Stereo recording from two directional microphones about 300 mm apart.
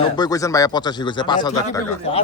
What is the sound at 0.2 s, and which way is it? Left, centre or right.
A man's voice, centre.